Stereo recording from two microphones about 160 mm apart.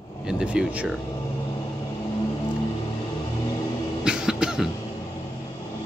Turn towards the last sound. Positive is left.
turn(degrees=-5)  # may be behind; listen again after turning